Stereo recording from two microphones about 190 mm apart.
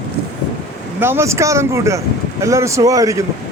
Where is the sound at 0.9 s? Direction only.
10° right (ahead or behind).